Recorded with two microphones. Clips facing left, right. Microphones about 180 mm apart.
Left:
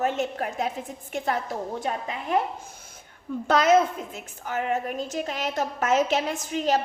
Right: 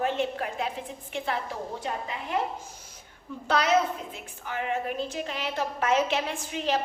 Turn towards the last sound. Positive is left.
turn(degrees=40)  # may be behind; listen again after turning